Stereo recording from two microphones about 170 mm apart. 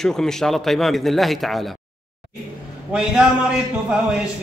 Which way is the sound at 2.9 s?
5° right (ahead or behind).